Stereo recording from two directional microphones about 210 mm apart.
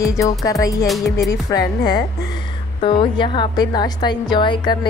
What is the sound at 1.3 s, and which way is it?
Speech, 15° left (ahead or behind).